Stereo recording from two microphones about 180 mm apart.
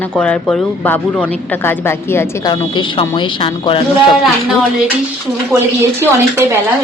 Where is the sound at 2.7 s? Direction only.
25° left (ahead or behind).